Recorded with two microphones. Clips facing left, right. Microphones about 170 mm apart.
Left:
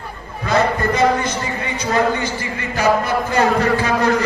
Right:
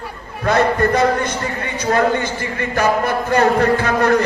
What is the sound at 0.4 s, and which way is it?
A man's voice, 55° right (ahead or behind).